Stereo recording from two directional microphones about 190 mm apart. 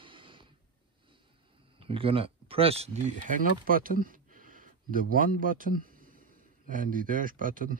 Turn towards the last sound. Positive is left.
turn(degrees=-45)  # may be behind; listen again after turning